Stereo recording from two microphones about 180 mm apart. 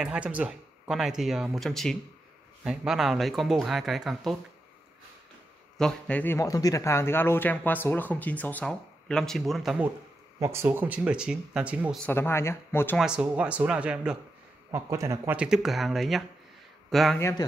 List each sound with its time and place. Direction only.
0.0 s speech: 5° right (ahead or behind)
5.8 s speech: 5° left (ahead or behind)
10.4 s speech: 15° right (ahead or behind)
12.1 s speech: 15° left (ahead or behind)
12.9 s speech: 5° right (ahead or behind)
14.7 s speech: 15° right (ahead or behind); by 17.2 s centre (ahead or behind)
17.2 s speech: 20° left (ahead or behind)